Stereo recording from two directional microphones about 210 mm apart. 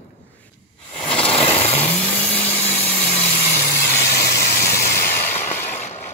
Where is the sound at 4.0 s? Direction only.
15° left (ahead or behind).